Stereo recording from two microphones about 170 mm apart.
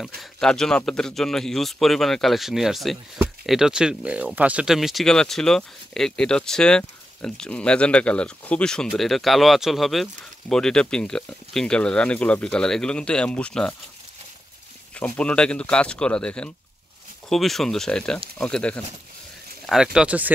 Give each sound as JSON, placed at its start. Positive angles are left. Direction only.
{"t": 0.0, "sound": "speech", "side_deg": 0}
{"t": 15.0, "sound": "speech", "side_deg": 5}